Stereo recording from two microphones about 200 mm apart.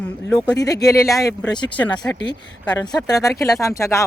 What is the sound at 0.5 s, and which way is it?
Speech, 20° left (ahead or behind).